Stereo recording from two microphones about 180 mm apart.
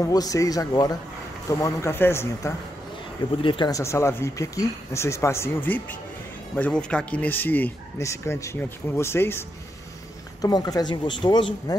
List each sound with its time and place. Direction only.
0.0 s speech: 20° left (ahead or behind)
3.4 s speech: 25° left (ahead or behind)
10.4 s speech: 20° left (ahead or behind)